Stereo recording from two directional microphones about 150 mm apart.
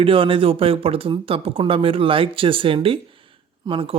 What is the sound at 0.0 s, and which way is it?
Speech, 35° right (ahead or behind).